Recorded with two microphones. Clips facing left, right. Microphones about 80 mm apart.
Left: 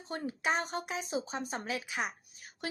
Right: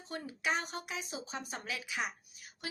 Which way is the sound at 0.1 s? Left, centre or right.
Left.